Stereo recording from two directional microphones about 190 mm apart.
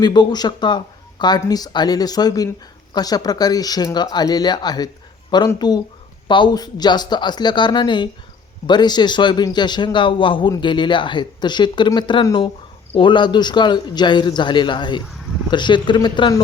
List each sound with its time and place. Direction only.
0.0 s a man's voice: 25° left (ahead or behind)